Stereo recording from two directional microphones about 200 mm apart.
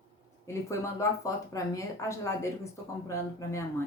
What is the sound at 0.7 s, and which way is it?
Speech, 15° left (ahead or behind).